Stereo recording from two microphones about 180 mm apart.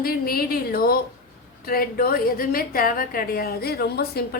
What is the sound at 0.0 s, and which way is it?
A woman's voice, 55° left (ahead or behind).